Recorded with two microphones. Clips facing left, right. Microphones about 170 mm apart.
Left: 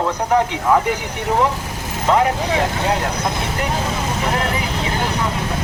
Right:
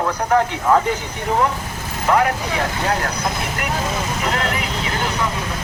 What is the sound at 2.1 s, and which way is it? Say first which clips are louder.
Speech: left 1 dB; 20° left (ahead or behind).